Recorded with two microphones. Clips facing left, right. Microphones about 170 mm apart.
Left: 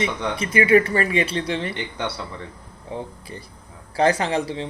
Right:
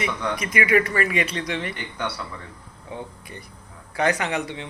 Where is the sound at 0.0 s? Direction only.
30° left (ahead or behind).